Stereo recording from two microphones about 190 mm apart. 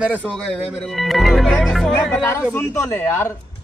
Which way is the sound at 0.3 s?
5° left (ahead or behind).